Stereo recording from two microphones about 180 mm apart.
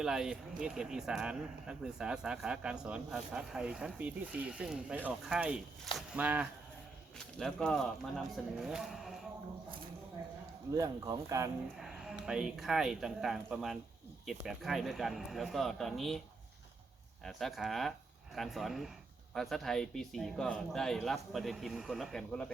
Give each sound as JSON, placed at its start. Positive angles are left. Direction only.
{"t": 0.0, "sound": "speech", "side_deg": -5}
{"t": 10.8, "sound": "speech", "side_deg": -20}
{"t": 11.8, "sound": "a sound", "side_deg": 0}
{"t": 12.2, "sound": "speech", "side_deg": -5}
{"t": 17.2, "sound": "speech", "side_deg": 0}